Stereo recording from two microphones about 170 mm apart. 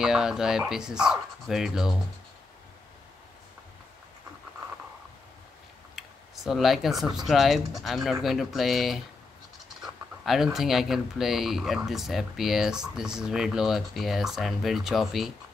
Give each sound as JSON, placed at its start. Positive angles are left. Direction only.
{"t": 0.0, "sound": "speech", "side_deg": -5}
{"t": 5.9, "sound": "a sound", "side_deg": 0}
{"t": 7.2, "sound": "speech", "side_deg": 0}